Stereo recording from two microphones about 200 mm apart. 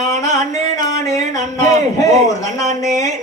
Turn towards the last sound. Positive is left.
turn(degrees=15)  # may be behind; listen again after turning